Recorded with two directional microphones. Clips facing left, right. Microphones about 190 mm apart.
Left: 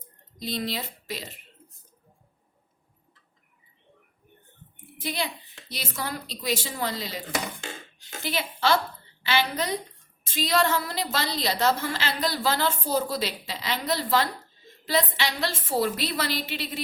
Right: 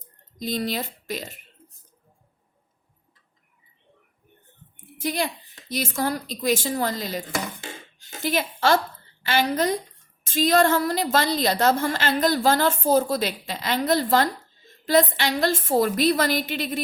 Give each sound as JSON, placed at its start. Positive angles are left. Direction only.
{"t": 0.3, "sound": "speech", "side_deg": -45}
{"t": 4.9, "sound": "a woman's voice", "side_deg": -45}